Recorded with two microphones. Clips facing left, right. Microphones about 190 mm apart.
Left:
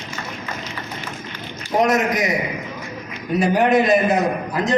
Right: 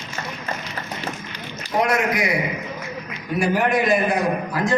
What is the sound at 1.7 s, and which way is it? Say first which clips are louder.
Speech: left 3 dB; 35° left (ahead or behind).